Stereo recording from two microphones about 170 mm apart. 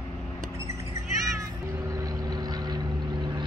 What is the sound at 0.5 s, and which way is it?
Cat, 15° right (ahead or behind).